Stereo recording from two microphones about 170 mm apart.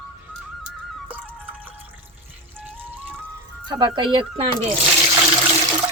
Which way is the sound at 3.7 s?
25° right (ahead or behind).